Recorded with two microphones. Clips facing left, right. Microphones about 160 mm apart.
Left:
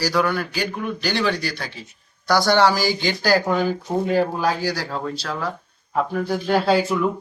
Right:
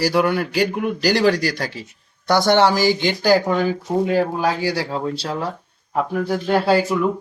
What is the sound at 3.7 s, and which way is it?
Speech, 5° right (ahead or behind).